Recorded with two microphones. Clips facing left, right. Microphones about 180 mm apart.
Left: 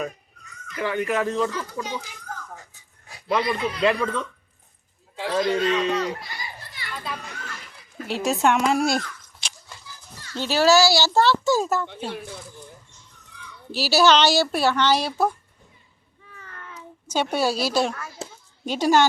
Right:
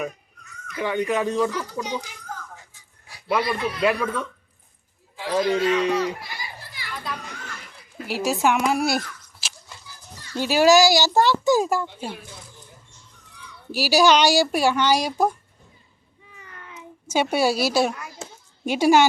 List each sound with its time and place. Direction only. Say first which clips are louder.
0.7 s speech: right 1 dB; 15° right (ahead or behind)
3.2 s a man's voice: even; 5° right (ahead or behind)
5.3 s a child's voice: right 1 dB; 10° right (ahead or behind)
6.9 s children playing: even; centre (ahead or behind)
8.0 s a man's voice: even; centre (ahead or behind)
9.4 s dog: even; 5° right (ahead or behind)
10.3 s speech: right 2 dB; 10° right (ahead or behind)
13.7 s speech: right 1 dB; 10° right (ahead or behind)
16.3 s a sound: left 2 dB; 15° right (ahead or behind)
17.1 s speech: right 2 dB; 10° right (ahead or behind)